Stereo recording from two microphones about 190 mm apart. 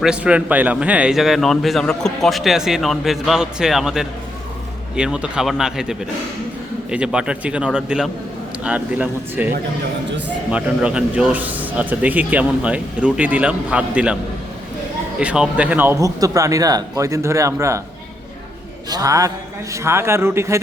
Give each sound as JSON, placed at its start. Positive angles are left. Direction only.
{"t": 0.0, "sound": "a man's voice", "side_deg": -5}
{"t": 10.5, "sound": "speech", "side_deg": -5}
{"t": 15.2, "sound": "speech", "side_deg": -5}
{"t": 18.9, "sound": "speech", "side_deg": -20}